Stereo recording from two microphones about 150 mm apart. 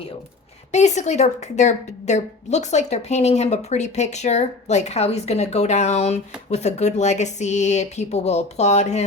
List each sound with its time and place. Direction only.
0.7 s a woman's voice: 50° left (ahead or behind)